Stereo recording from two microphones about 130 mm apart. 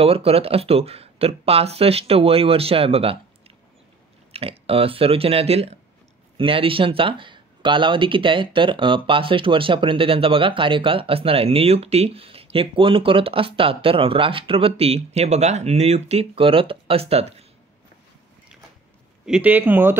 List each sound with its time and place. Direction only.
0.0 s speech: 50° right (ahead or behind)
4.3 s speech: 45° right (ahead or behind)
19.2 s speech: 10° right (ahead or behind)